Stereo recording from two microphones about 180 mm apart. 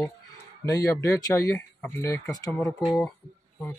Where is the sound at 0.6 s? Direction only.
20° left (ahead or behind).